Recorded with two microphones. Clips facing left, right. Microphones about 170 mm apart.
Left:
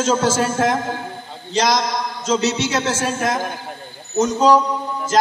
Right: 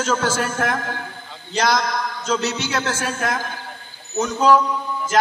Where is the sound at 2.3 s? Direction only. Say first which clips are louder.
Left 4 dB; 90° left.